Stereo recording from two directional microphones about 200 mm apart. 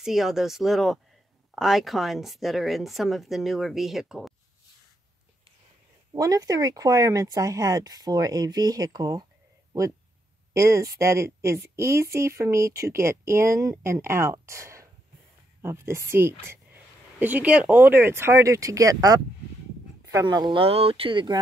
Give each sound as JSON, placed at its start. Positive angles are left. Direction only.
{"t": 0.0, "sound": "a woman's voice", "side_deg": 0}
{"t": 6.1, "sound": "speech", "side_deg": -15}
{"t": 10.5, "sound": "speech", "side_deg": -15}